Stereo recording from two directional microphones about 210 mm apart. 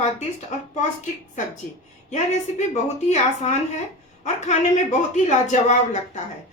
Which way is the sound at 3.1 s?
35° left (ahead or behind).